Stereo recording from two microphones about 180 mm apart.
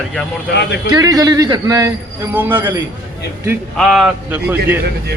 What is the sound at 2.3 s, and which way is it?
Speech, 10° right (ahead or behind).